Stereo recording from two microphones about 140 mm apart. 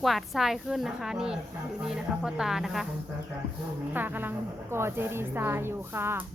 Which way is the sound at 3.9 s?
15° right (ahead or behind).